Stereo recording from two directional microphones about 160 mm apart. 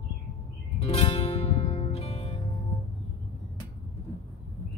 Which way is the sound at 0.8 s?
40° left (ahead or behind).